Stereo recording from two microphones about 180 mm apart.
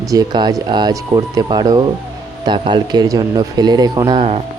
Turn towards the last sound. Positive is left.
turn(degrees=-25)  # may be behind; listen again after turning